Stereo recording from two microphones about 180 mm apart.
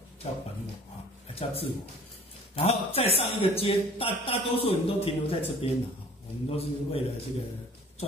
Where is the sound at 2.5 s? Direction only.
35° left (ahead or behind).